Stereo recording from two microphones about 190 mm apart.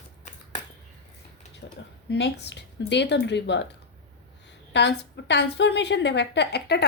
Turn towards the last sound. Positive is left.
turn(degrees=60)  # may be behind; listen again after turning